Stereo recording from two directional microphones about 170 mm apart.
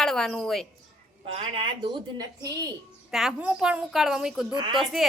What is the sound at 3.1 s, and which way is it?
A woman's voice, centre (ahead or behind).